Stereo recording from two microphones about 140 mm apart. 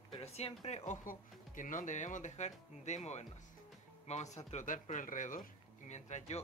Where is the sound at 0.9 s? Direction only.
70° left (ahead or behind).